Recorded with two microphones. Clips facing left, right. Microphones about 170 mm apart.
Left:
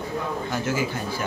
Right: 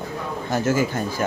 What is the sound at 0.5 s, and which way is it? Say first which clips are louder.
Speech: right 7 dB; 45° right (ahead or behind).